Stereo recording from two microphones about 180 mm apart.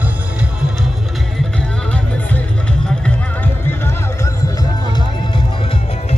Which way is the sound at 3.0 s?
10° left (ahead or behind).